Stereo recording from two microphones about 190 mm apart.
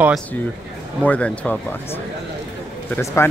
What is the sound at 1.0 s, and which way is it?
Speech, 5° left (ahead or behind).